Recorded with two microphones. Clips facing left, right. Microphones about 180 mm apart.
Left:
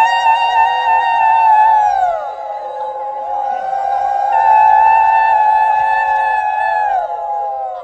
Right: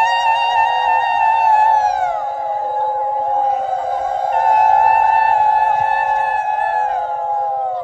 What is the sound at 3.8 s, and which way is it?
Music, 70° left (ahead or behind).